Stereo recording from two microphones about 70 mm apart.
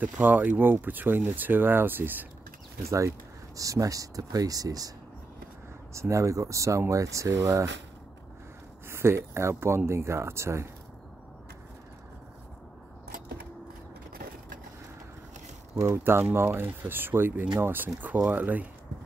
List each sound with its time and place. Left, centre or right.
0.0 s speech: right
3.5 s speech: right
5.9 s speech: right
8.8 s speech: right
15.7 s speech: right